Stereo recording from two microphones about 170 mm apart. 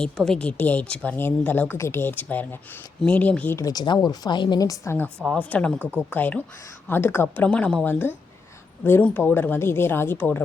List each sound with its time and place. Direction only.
0.0 s a woman's voice: 5° left (ahead or behind)